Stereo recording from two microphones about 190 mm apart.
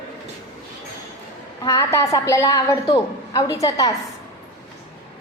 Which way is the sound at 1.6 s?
15° left (ahead or behind).